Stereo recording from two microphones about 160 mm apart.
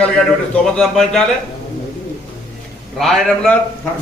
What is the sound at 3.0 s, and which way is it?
Speech, centre (ahead or behind).